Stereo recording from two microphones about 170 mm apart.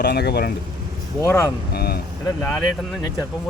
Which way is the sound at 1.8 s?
65° left (ahead or behind).